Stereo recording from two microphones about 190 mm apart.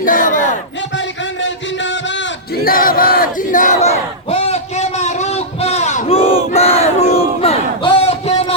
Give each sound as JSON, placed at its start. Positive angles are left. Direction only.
{"t": 0.0, "sound": "battle cry", "side_deg": 45}
{"t": 0.9, "sound": "a sound", "side_deg": 75}
{"t": 2.6, "sound": "battle cry", "side_deg": 50}